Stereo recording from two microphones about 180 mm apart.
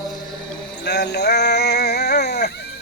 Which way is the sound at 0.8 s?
70° left (ahead or behind).